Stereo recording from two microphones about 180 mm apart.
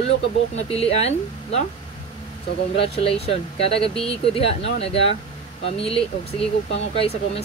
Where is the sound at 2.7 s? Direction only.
30° left (ahead or behind).